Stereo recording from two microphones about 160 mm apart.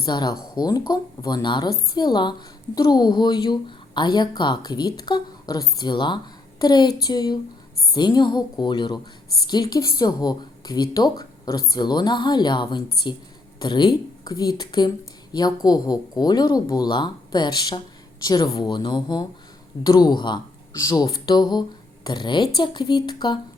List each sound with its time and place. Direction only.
0.0 s a woman's voice: 25° left (ahead or behind)